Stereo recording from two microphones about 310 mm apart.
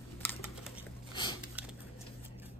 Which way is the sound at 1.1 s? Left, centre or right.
Centre.